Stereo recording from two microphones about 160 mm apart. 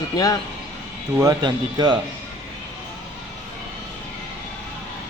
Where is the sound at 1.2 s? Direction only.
25° right (ahead or behind).